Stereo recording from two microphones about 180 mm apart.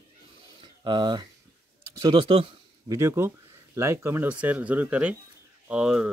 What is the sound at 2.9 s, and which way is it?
Speech, 15° right (ahead or behind).